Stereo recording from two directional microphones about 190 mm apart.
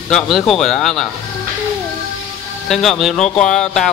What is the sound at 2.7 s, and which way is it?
A man's voice, centre (ahead or behind).